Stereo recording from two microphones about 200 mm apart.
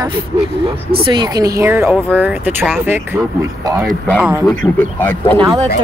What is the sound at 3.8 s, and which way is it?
Speech, 5° left (ahead or behind).